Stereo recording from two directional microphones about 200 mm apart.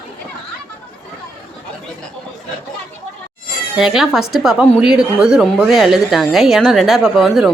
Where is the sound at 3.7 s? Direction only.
5° right (ahead or behind).